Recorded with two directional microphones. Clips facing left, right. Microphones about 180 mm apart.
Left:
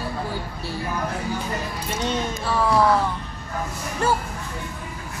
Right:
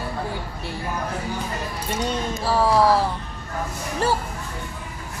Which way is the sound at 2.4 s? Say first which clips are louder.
Right 2 dB; 35° right (ahead or behind).